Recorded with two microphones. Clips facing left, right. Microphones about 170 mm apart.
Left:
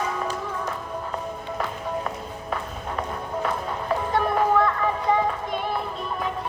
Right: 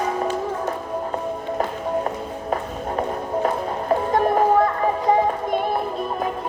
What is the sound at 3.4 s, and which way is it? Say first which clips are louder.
Music: right 4 dB; 40° right (ahead or behind).